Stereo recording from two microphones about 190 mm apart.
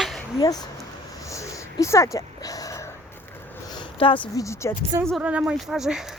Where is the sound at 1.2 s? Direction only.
15° left (ahead or behind).